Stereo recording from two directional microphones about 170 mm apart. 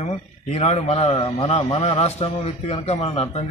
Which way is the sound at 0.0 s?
40° left (ahead or behind).